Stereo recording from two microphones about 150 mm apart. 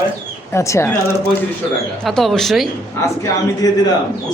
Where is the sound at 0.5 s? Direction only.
20° left (ahead or behind).